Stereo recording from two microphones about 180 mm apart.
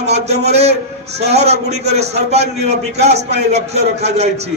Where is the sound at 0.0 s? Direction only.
35° right (ahead or behind).